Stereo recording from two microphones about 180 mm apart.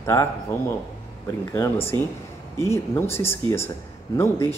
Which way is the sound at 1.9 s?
25° right (ahead or behind).